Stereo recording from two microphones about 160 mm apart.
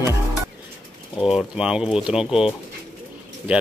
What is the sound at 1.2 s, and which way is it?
Speech, 5° right (ahead or behind).